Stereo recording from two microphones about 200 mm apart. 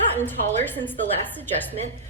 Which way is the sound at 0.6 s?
10° left (ahead or behind).